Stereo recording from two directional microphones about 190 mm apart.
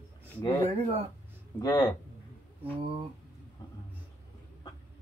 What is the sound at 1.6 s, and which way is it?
Speech, 20° left (ahead or behind).